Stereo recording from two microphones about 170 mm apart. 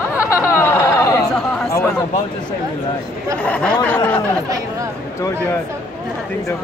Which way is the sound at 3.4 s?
5° left (ahead or behind).